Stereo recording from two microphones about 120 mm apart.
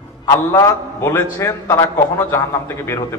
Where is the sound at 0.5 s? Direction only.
25° left (ahead or behind).